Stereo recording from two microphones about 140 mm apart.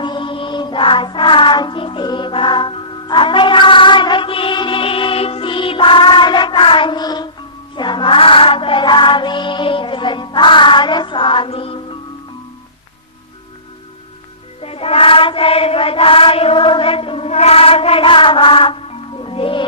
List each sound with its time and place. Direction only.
0.0 s music: 35° left (ahead or behind)
7.8 s child singing: 35° left (ahead or behind)
14.6 s chant: 45° left (ahead or behind)